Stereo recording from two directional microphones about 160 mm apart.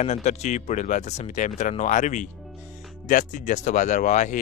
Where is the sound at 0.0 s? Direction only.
45° left (ahead or behind).